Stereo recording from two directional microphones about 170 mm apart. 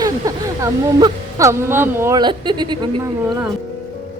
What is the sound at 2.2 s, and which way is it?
Speech, 25° right (ahead or behind).